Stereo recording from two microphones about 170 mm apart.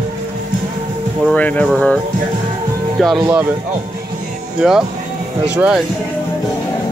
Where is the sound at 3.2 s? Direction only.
10° right (ahead or behind).